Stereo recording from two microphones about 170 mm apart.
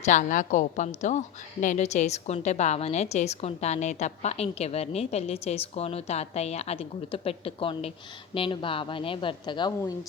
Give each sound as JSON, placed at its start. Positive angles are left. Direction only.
{"t": 0.0, "sound": "a woman's voice", "side_deg": 45}